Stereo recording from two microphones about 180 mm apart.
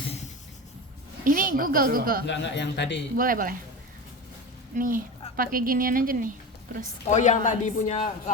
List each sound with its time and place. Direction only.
1.2 s a woman's voice: 50° right (ahead or behind)
2.2 s speech: 80° left
3.2 s a woman's voice: 50° right (ahead or behind)
4.7 s a woman's voice: 50° right (ahead or behind)
7.1 s a man's voice: 40° left (ahead or behind)